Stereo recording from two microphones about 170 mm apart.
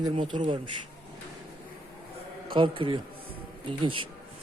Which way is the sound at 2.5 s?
30° right (ahead or behind).